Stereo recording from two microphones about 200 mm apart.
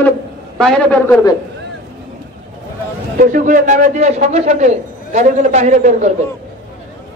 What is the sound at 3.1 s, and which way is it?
A man's voice, 40° right (ahead or behind).